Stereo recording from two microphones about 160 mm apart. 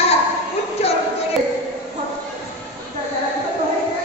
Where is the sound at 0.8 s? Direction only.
40° left (ahead or behind).